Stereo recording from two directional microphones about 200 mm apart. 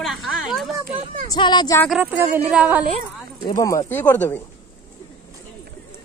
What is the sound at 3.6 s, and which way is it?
Speech, 15° left (ahead or behind).